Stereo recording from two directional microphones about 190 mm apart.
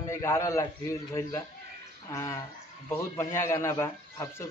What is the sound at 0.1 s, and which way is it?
Speech, 15° left (ahead or behind).